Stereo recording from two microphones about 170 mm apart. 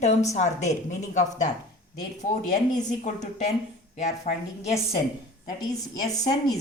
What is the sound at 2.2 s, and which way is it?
Speech, 50° left (ahead or behind).